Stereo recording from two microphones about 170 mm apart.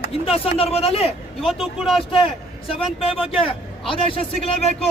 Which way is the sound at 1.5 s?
Centre (ahead or behind).